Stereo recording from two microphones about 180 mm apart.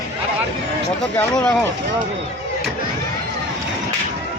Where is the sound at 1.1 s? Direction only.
5° left (ahead or behind).